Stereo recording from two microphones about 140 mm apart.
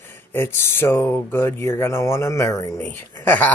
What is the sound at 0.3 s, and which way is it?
Speech, 15° left (ahead or behind).